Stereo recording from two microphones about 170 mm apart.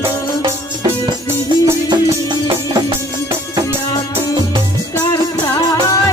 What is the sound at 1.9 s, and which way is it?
Music, 25° right (ahead or behind).